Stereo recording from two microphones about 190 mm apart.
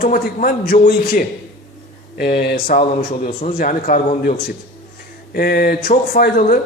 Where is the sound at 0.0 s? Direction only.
45° left (ahead or behind).